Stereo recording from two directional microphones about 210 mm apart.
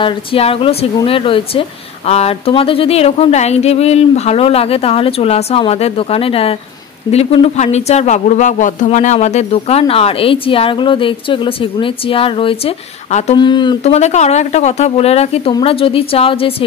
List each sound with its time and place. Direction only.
0.0 s speech: 25° left (ahead or behind)